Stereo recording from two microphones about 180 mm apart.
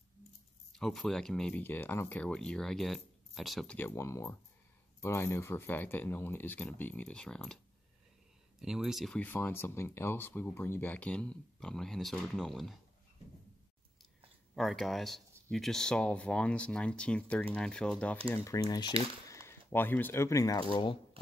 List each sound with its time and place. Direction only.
0.7 s speech: centre (ahead or behind)
3.7 s speech: 15° left (ahead or behind)
8.5 s speech: centre (ahead or behind)
14.5 s speech: centre (ahead or behind)
18.3 s speech: 15° left (ahead or behind)
19.2 s a sound: 15° left (ahead or behind)
19.7 s speech: 10° left (ahead or behind); by 21.0 s 25° left (ahead or behind)